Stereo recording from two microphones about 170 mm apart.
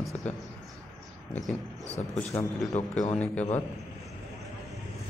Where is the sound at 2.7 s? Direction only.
40° left (ahead or behind).